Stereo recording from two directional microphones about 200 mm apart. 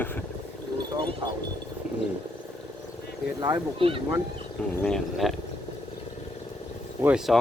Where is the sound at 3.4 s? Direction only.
25° right (ahead or behind).